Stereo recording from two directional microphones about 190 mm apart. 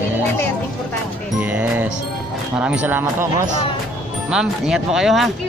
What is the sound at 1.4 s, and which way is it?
Speech, 10° right (ahead or behind).